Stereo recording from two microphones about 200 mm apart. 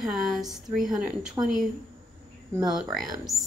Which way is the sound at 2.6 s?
Centre (ahead or behind).